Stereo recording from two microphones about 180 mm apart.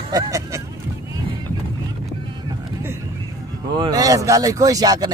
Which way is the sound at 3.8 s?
20° right (ahead or behind).